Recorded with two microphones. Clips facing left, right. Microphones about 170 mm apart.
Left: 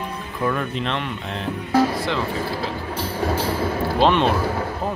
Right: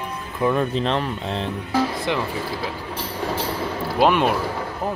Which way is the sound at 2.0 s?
15° right (ahead or behind).